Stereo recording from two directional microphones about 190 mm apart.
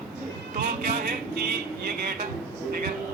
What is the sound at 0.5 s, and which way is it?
Speech, 50° right (ahead or behind).